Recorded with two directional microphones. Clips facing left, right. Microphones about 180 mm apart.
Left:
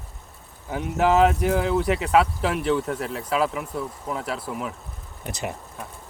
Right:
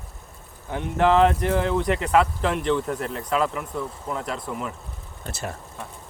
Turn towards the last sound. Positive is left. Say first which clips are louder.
# left 2 dB
turn(degrees=15)  # may be behind; listen again after turning